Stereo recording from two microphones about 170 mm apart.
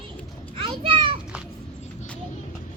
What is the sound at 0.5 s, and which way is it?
Children playing, 30° right (ahead or behind).